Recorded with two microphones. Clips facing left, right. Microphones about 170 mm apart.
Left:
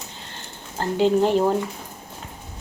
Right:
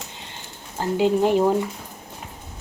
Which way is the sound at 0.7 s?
10° right (ahead or behind).